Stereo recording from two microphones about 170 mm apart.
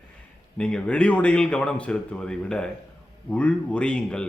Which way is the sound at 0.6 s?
5° left (ahead or behind).